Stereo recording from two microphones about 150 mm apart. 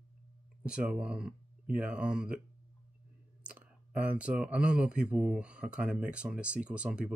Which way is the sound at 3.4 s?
10° right (ahead or behind).